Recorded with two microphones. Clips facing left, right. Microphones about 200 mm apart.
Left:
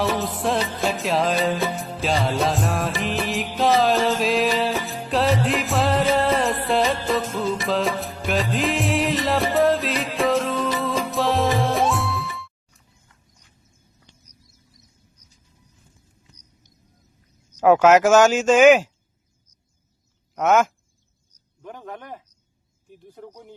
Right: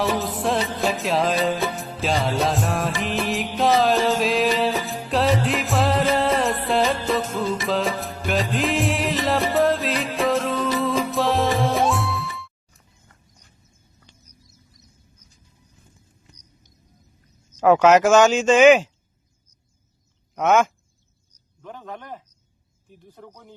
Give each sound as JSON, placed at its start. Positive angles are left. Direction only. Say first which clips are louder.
{"t": 0.0, "sound": "music", "louder": "even", "side_deg": 0}
{"t": 13.1, "sound": "a sound", "louder": "right 3 dB", "side_deg": -45}
{"t": 17.6, "sound": "speech", "louder": "even", "side_deg": 5}
{"t": 20.3, "sound": "speech", "louder": "even", "side_deg": 5}
{"t": 21.6, "sound": "a sound", "louder": "even", "side_deg": 15}
{"t": 23.1, "sound": "speech", "louder": "left 3 dB", "side_deg": 10}